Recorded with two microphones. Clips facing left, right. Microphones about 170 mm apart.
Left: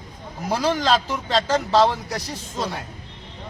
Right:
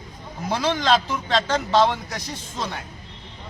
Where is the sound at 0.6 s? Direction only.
Centre (ahead or behind).